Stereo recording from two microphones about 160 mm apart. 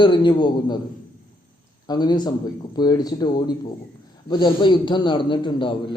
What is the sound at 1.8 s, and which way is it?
A man's voice, 25° left (ahead or behind).